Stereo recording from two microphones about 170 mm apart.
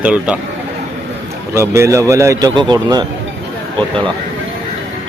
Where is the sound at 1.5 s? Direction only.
15° right (ahead or behind).